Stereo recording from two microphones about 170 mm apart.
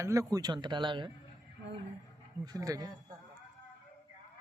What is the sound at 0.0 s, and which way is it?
Speech, 20° right (ahead or behind).